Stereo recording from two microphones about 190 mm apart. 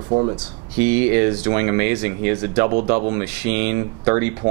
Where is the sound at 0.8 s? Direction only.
10° right (ahead or behind).